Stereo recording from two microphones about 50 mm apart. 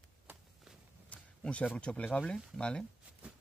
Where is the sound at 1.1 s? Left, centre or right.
Left.